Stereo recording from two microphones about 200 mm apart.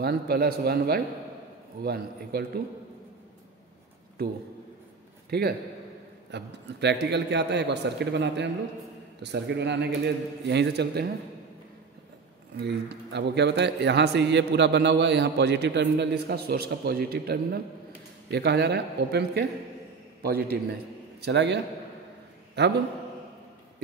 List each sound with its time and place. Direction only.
0.0 s a man's voice: 50° right (ahead or behind)
5.3 s a man's voice: 55° right (ahead or behind)
12.5 s a man's voice: 55° right (ahead or behind)
22.6 s a man's voice: 60° right (ahead or behind)